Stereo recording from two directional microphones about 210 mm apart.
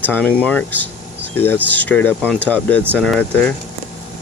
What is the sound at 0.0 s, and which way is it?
Speech, 10° left (ahead or behind).